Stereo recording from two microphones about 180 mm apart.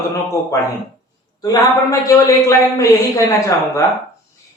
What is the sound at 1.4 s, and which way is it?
A woman's voice, 20° left (ahead or behind).